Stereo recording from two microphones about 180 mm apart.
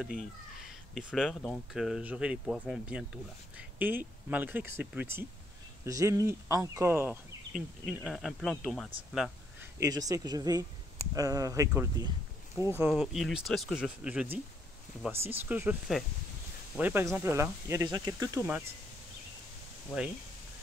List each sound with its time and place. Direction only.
0.9 s speech: centre (ahead or behind)
9.8 s speech: 20° right (ahead or behind)